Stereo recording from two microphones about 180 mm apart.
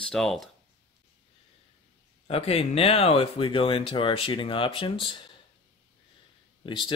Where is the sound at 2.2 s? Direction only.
35° left (ahead or behind).